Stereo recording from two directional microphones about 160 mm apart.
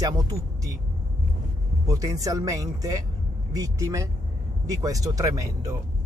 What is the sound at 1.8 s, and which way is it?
Speech, 20° right (ahead or behind).